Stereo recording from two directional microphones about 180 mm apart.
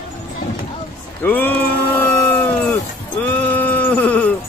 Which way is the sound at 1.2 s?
10° left (ahead or behind).